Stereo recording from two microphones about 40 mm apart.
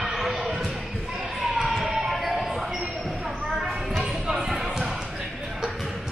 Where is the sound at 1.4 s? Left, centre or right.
Centre.